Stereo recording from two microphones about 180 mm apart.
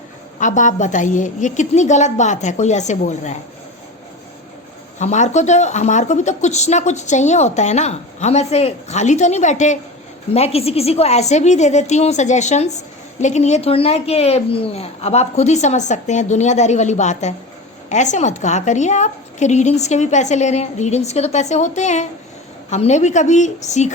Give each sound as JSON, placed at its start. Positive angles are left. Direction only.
{"t": 0.3, "sound": "a woman's voice", "side_deg": 45}
{"t": 4.9, "sound": "a woman's voice", "side_deg": 40}